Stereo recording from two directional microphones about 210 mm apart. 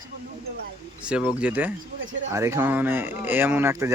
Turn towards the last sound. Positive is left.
turn(degrees=-10)  # may be behind; listen again after turning